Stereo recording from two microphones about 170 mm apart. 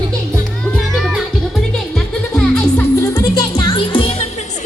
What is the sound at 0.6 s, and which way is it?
Music, centre (ahead or behind).